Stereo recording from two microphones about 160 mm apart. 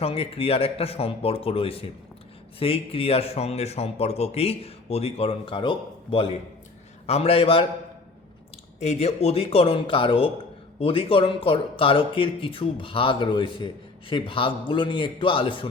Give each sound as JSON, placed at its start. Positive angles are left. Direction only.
{"t": 0.0, "sound": "a man's voice", "side_deg": 35}
{"t": 8.8, "sound": "a man's voice", "side_deg": 40}